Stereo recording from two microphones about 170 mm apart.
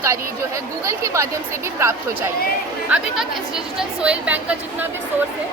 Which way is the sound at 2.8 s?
10° right (ahead or behind).